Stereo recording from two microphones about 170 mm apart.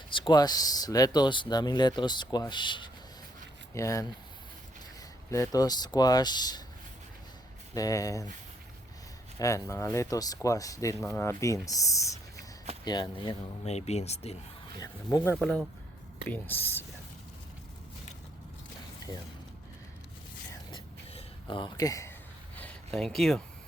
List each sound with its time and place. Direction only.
0.1 s speech: 25° left (ahead or behind)
5.3 s speech: 20° left (ahead or behind)
7.7 s speech: 20° left (ahead or behind)
9.4 s speech: 15° left (ahead or behind)
13.7 s speech: 40° left (ahead or behind)
14.8 s speech: 20° left (ahead or behind)
15.4 s speech: 5° left (ahead or behind)
20.7 s a sound: 30° left (ahead or behind)
22.5 s a sound: 10° left (ahead or behind)